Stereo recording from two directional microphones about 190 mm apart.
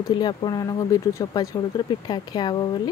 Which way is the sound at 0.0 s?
25° left (ahead or behind).